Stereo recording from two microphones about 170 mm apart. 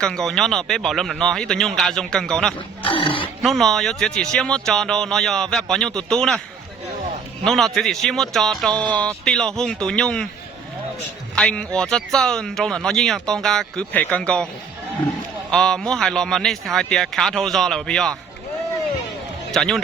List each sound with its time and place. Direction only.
0.0 s speech: 5° left (ahead or behind)
2.8 s speech: 30° left (ahead or behind)
3.4 s speech: centre (ahead or behind)
7.4 s speech: centre (ahead or behind)
11.3 s speech: 5° left (ahead or behind)
15.4 s speech: 5° left (ahead or behind)
19.5 s a man's voice: centre (ahead or behind)